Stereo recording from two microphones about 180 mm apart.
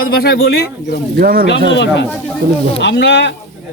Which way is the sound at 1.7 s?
80° left.